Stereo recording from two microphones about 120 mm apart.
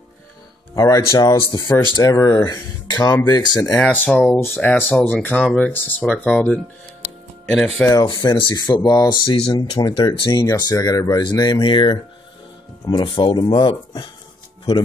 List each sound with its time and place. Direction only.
0.7 s speech: 30° left (ahead or behind)
3.7 s speech: 10° left (ahead or behind)
7.9 s speech: 35° left (ahead or behind)
13.0 s speech: 40° left (ahead or behind)